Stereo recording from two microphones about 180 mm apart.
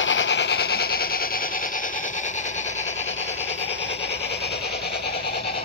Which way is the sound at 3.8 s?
75° left (ahead or behind).